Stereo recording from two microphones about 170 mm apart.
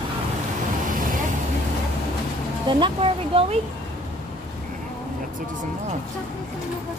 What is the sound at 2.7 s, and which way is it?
Speech, 30° right (ahead or behind).